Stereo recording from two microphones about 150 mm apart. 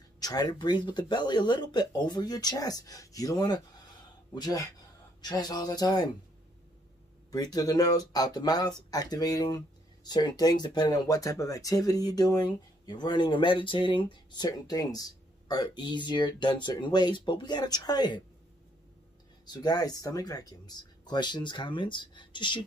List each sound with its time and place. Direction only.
0.2 s speech: 25° left (ahead or behind)
7.2 s speech: 25° left (ahead or behind)
19.4 s speech: 30° left (ahead or behind)